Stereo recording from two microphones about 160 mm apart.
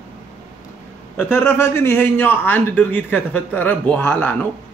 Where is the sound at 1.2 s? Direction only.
15° left (ahead or behind).